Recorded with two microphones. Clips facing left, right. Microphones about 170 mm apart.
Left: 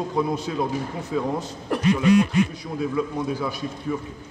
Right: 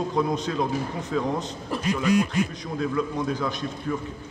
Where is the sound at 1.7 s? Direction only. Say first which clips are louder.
Left 5 dB; 65° left (ahead or behind).